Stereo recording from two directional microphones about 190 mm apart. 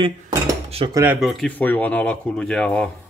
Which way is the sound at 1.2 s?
Centre (ahead or behind).